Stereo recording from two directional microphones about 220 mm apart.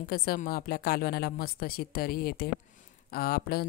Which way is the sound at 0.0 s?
45° left (ahead or behind).